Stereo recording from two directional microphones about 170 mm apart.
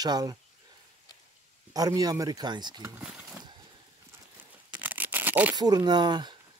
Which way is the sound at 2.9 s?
10° right (ahead or behind).